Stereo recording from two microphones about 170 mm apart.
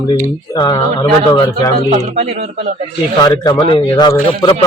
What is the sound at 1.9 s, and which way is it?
Speech, 40° right (ahead or behind).